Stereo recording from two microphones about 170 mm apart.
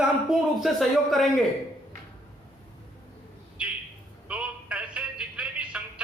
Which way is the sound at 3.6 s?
5° right (ahead or behind).